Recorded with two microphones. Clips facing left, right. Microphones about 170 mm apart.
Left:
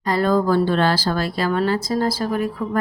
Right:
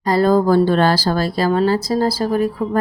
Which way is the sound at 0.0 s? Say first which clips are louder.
Right 4 dB; 35° right (ahead or behind).